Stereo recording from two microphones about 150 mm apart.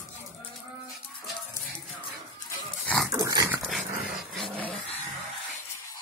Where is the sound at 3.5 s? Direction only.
5° right (ahead or behind).